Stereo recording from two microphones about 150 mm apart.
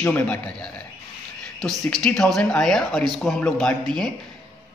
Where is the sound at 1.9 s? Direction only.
5° left (ahead or behind).